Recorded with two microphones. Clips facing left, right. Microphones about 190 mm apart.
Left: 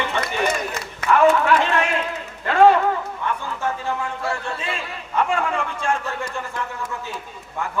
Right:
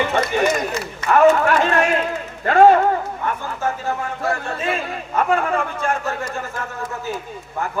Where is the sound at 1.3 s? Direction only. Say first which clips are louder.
Right 1 dB; 45° right (ahead or behind).